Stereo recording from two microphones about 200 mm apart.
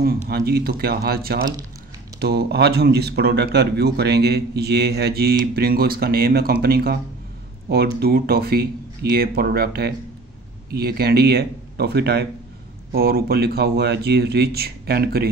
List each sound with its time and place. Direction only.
0.3 s a man's voice: 50° right (ahead or behind)